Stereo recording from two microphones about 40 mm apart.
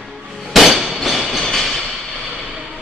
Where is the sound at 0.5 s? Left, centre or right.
Centre.